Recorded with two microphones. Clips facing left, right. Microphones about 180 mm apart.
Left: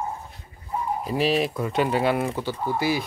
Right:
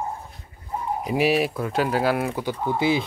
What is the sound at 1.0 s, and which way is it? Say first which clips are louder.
Speech: right 2 dB; 10° right (ahead or behind).